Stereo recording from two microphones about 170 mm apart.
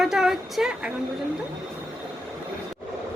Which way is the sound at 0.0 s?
5° right (ahead or behind).